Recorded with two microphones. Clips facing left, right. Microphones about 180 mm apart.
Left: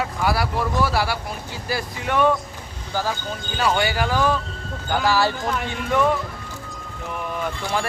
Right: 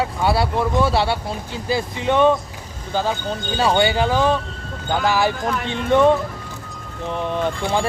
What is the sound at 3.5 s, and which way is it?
Speech, 25° right (ahead or behind).